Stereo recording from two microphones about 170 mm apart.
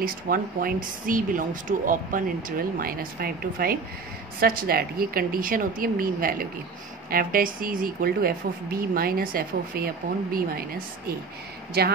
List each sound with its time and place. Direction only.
0.0 s speech: 60° right (ahead or behind)
11.8 s a woman's voice: 70° right (ahead or behind)